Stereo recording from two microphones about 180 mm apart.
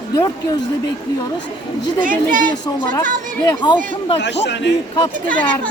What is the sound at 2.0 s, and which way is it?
Speech, 50° right (ahead or behind).